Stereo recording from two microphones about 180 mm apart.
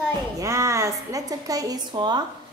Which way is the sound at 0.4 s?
15° right (ahead or behind).